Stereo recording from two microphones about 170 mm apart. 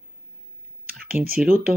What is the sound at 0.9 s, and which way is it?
Computer keyboard, 60° right (ahead or behind).